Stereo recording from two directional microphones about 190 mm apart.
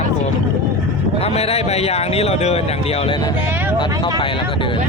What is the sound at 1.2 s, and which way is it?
Speech, 35° left (ahead or behind).